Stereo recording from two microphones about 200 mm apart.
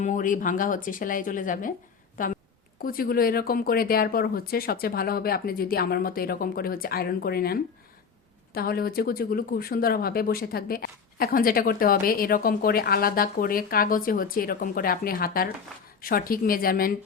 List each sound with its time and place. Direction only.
0.0 s speech: 40° left (ahead or behind)
2.1 s a sound: 40° left (ahead or behind)
2.8 s speech: 45° left (ahead or behind)